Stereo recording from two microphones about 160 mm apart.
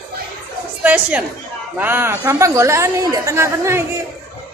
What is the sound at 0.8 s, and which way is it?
A woman's voice, 10° right (ahead or behind).